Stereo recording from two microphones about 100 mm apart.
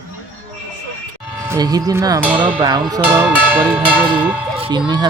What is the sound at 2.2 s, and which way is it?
Speech, 15° right (ahead or behind).